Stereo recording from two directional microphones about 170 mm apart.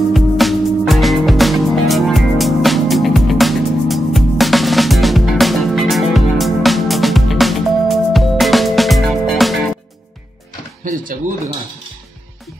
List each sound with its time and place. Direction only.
0.1 s music: centre (ahead or behind)
10.8 s drawer open or close: 50° right (ahead or behind)